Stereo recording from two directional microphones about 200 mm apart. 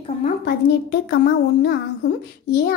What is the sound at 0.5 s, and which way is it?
A woman's voice, 60° left (ahead or behind).